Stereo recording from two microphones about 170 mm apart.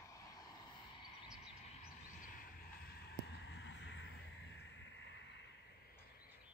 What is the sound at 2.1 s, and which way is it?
Vehicle, 55° left (ahead or behind).